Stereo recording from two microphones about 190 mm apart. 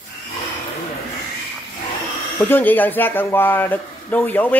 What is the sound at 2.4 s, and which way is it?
Speech, 10° left (ahead or behind).